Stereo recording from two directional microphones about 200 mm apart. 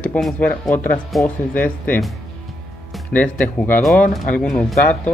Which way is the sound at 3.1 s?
10° left (ahead or behind).